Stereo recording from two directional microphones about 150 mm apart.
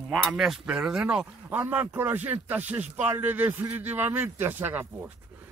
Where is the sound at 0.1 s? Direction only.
Centre (ahead or behind).